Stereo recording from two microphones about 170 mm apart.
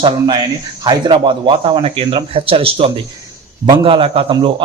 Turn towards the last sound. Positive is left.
turn(degrees=-30)  # may be behind; listen again after turning